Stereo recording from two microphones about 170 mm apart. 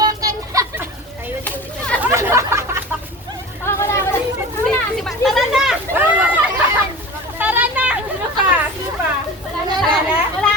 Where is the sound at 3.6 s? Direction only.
15° left (ahead or behind).